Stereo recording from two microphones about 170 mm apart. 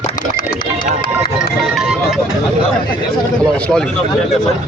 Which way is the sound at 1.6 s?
5° right (ahead or behind).